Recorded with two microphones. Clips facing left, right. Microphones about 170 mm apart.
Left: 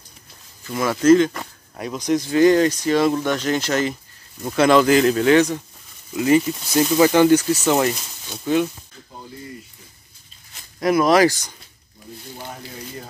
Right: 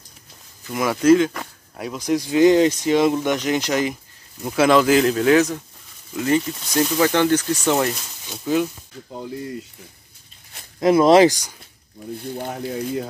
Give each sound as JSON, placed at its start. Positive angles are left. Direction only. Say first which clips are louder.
{"t": 0.7, "sound": "speech", "louder": "left 1 dB", "side_deg": -10}
{"t": 10.8, "sound": "speech", "louder": "right 3 dB", "side_deg": -25}
{"t": 12.4, "sound": "speech", "louder": "right 7 dB", "side_deg": -55}